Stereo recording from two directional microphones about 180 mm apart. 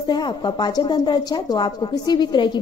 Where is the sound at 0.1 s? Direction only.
25° left (ahead or behind).